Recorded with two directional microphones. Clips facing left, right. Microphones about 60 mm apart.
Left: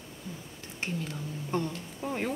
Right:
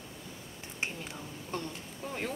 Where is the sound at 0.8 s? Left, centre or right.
Centre.